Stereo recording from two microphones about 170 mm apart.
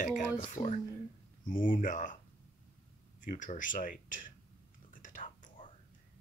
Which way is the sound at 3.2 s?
50° left (ahead or behind).